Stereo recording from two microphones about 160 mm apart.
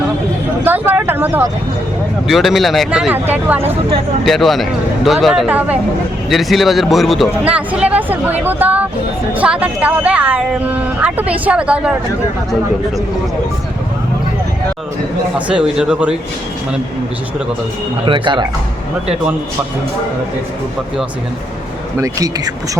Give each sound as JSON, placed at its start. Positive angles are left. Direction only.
{"t": 0.6, "sound": "a sound", "side_deg": -10}
{"t": 2.2, "sound": "speech", "side_deg": 0}
{"t": 4.3, "sound": "speech", "side_deg": 0}
{"t": 15.4, "sound": "speech", "side_deg": -5}
{"t": 18.0, "sound": "speech", "side_deg": -30}
{"t": 21.9, "sound": "speech", "side_deg": -20}